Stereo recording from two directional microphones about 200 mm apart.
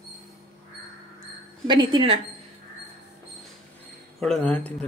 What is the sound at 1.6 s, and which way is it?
Speech, 25° right (ahead or behind).